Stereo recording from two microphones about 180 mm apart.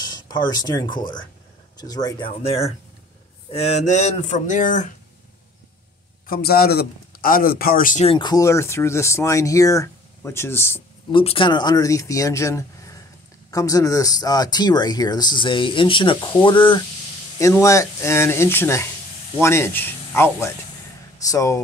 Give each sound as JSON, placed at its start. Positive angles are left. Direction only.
{"t": 0.0, "sound": "speech", "side_deg": 25}
{"t": 6.2, "sound": "a man's voice", "side_deg": 55}
{"t": 8.1, "sound": "speech", "side_deg": 25}
{"t": 11.1, "sound": "speech", "side_deg": 30}